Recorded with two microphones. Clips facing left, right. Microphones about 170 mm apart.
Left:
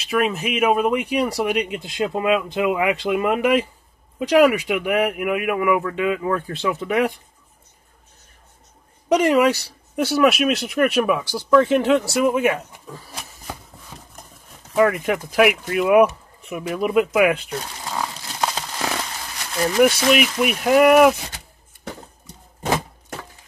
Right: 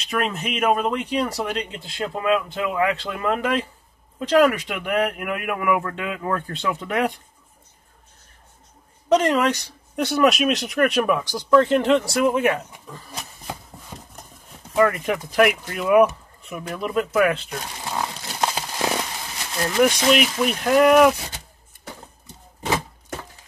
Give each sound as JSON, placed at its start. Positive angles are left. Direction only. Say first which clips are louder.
{"t": 0.0, "sound": "speech", "louder": "left 4 dB", "side_deg": 5}
{"t": 9.1, "sound": "speech", "louder": "left 2 dB", "side_deg": 10}
{"t": 14.8, "sound": "speech", "louder": "left 2 dB", "side_deg": 0}
{"t": 18.5, "sound": "a sound", "louder": "right 2 dB", "side_deg": -15}
{"t": 20.1, "sound": "speech", "louder": "left 1 dB", "side_deg": 5}